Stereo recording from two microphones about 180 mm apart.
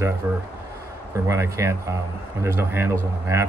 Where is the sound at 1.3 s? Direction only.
15° right (ahead or behind).